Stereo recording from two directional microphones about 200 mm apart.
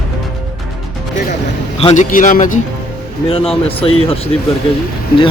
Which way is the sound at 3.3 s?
30° left (ahead or behind).